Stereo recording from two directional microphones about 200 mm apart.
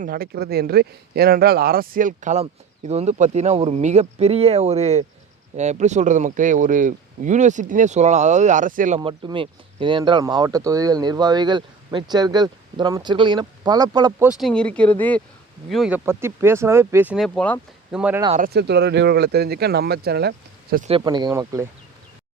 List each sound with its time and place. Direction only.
0.0 s speech: 50° right (ahead or behind)
9.0 s speech: 25° right (ahead or behind)
14.3 s speech: centre (ahead or behind)
16.0 s speech: 10° right (ahead or behind)
17.2 s speech: 5° left (ahead or behind)
17.9 s speech: 5° right (ahead or behind)
18.3 s speech: 45° right (ahead or behind)
20.8 s speech: 25° right (ahead or behind)